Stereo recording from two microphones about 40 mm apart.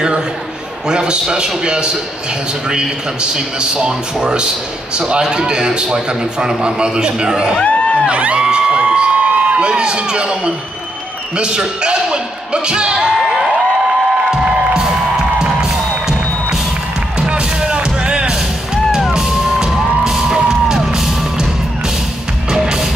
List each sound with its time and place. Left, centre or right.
0.8 s a man's voice: right
7.6 s a sound: left
8.1 s a sound: right
11.3 s a man's voice: right
15.4 s music: centre
17.6 s music: right
19.1 s music: centre
22.5 s music: centre